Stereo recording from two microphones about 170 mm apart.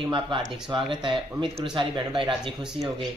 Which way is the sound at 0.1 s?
30° right (ahead or behind).